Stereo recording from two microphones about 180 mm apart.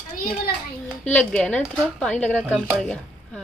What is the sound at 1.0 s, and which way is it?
Speech, 5° left (ahead or behind).